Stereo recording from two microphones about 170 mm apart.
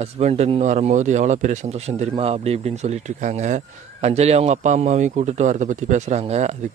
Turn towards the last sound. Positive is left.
turn(degrees=-40)  # may be behind; listen again after turning